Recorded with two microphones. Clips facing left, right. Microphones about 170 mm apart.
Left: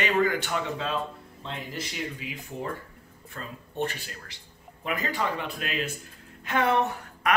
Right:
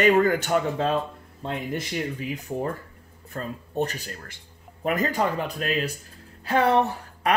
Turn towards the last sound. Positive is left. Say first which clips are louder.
# right 2 dB
turn(degrees=-35)  # may be behind; listen again after turning